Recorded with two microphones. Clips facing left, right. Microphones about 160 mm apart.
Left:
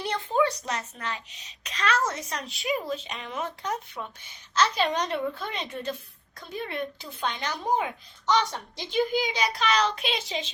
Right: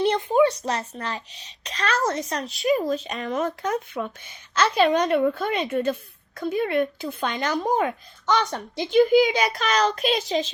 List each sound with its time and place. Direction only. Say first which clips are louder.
0.0 s a child's voice: right 7 dB; 20° right (ahead or behind); by 3.7 s 45° right (ahead or behind)
3.7 s speech: right 6 dB; 90° right
4.2 s a woman's voice: right 1 dB; 55° right (ahead or behind); by 10.5 s 40° right (ahead or behind)